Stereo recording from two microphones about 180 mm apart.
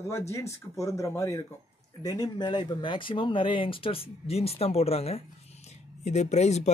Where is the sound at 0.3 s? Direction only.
15° left (ahead or behind).